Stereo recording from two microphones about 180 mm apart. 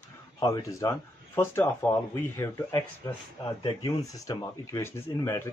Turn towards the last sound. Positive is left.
turn(degrees=15)  # may be behind; listen again after turning